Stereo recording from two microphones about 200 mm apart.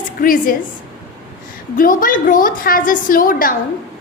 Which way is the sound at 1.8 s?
45° left (ahead or behind).